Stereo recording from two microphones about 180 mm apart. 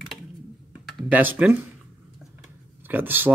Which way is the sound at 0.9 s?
5° right (ahead or behind).